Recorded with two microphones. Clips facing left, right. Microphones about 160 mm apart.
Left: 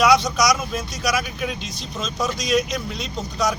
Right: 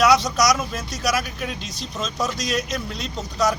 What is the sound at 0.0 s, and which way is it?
Speech, centre (ahead or behind).